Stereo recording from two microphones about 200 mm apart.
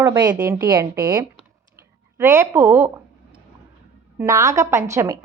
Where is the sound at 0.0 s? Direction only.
20° right (ahead or behind).